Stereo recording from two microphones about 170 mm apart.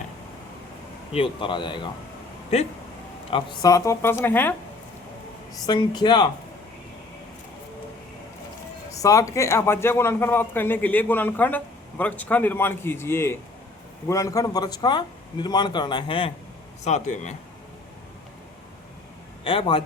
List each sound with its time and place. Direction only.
1.1 s a man's voice: 30° left (ahead or behind)
3.2 s speech: 25° left (ahead or behind)
5.6 s a man's voice: 25° left (ahead or behind)
9.0 s a man's voice: 20° left (ahead or behind)
16.8 s speech: 45° left (ahead or behind)
19.5 s a man's voice: 30° left (ahead or behind)